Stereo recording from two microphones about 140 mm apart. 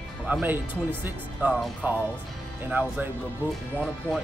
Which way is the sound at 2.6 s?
10° right (ahead or behind).